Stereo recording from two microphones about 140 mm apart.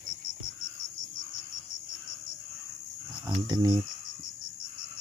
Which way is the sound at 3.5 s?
30° right (ahead or behind).